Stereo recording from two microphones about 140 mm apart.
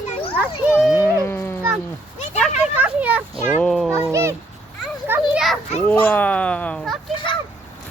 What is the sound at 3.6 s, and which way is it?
Speech, centre (ahead or behind).